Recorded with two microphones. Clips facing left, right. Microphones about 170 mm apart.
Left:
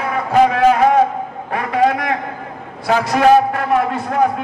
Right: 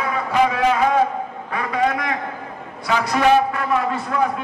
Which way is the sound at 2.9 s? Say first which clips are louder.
Left 4 dB; 40° left (ahead or behind).